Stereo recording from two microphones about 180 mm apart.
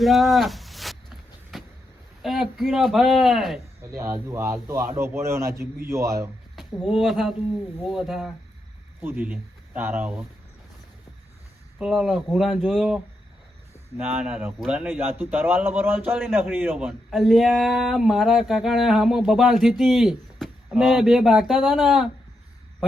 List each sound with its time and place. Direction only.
0.0 s a sound: centre (ahead or behind)
2.2 s speech: centre (ahead or behind)
3.9 s speech: 15° right (ahead or behind)
6.6 s speech: centre (ahead or behind)
11.8 s speech: 5° right (ahead or behind)